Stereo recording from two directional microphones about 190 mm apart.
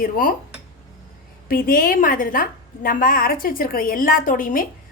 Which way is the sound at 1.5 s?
50° left (ahead or behind).